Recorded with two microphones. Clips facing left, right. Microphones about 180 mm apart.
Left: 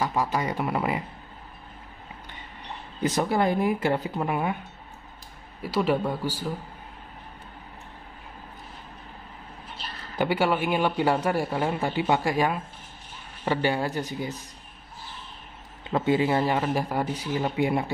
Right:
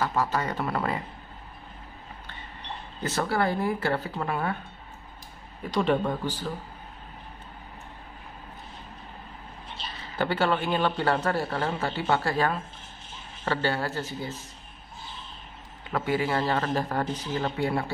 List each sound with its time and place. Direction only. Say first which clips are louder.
0.0 s a man's voice: left 1 dB; 15° left (ahead or behind)
3.0 s a man's voice: left 3 dB; 15° left (ahead or behind)
5.6 s a man's voice: even; 5° left (ahead or behind)
10.1 s a man's voice: left 2 dB; 10° left (ahead or behind)
15.9 s a man's voice: left 4 dB; 25° left (ahead or behind)
16.3 s a man's voice: left 2 dB; 10° left (ahead or behind)